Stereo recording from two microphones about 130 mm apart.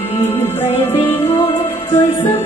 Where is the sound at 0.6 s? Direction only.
15° left (ahead or behind).